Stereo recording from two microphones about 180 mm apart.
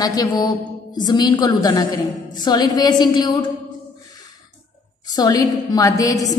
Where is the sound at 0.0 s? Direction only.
20° left (ahead or behind).